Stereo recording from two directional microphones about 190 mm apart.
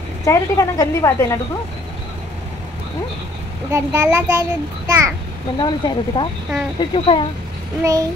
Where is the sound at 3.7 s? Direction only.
15° right (ahead or behind).